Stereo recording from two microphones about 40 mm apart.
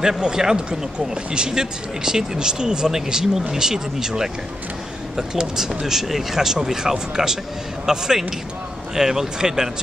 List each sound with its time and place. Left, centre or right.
0.0 s speech: centre